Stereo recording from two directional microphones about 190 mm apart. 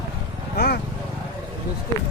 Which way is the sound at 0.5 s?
60° left (ahead or behind).